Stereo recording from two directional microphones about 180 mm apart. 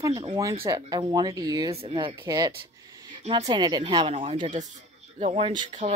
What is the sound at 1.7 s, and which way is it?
Speech, 30° right (ahead or behind).